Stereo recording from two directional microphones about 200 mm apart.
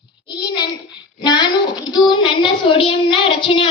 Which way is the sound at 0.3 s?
20° left (ahead or behind).